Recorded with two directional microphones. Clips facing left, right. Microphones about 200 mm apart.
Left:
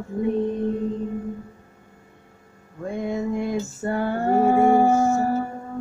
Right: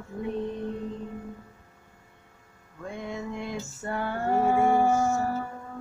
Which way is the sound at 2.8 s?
45° left (ahead or behind).